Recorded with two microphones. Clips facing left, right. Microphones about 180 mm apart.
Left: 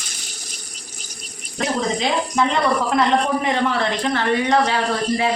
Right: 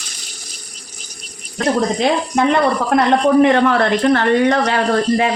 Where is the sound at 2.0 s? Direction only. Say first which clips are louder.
Right 4 dB; 60° right (ahead or behind).